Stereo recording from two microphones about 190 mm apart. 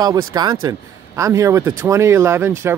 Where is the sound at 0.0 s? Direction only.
20° right (ahead or behind).